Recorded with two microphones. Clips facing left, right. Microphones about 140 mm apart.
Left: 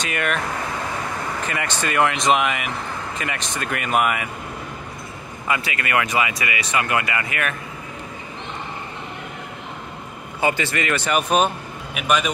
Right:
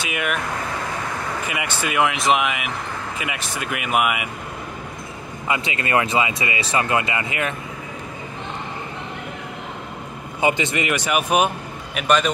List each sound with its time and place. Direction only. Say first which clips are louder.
0.0 s speech: left 1 dB; 5° right (ahead or behind)
1.5 s speech: left 1 dB; 10° right (ahead or behind)
5.5 s speech: right 1 dB; 25° right (ahead or behind)
10.4 s speech: right 1 dB; 20° right (ahead or behind)
11.9 s a man's voice: right 2 dB; 5° left (ahead or behind)